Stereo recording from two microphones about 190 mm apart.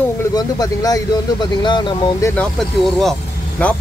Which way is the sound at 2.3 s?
5° left (ahead or behind).